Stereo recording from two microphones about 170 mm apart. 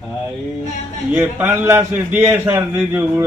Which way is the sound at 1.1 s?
10° right (ahead or behind).